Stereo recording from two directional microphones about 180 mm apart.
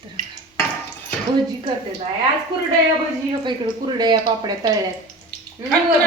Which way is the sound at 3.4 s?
25° right (ahead or behind).